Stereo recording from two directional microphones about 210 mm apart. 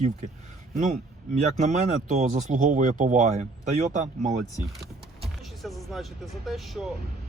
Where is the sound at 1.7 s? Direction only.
35° right (ahead or behind).